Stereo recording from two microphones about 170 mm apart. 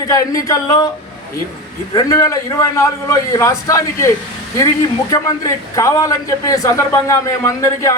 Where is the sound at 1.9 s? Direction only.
20° left (ahead or behind).